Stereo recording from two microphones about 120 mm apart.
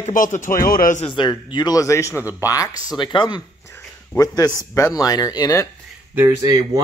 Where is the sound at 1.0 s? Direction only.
40° left (ahead or behind).